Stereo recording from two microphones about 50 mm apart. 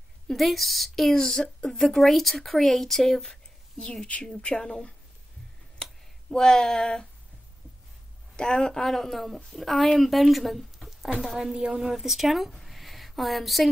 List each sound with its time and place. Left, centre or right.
0.3 s speech: centre
4.4 s speech: centre
5.8 s a sound: centre
6.3 s speech: centre
8.4 s speech: centre
11.5 s a woman's voice: centre
11.8 s a woman's voice: centre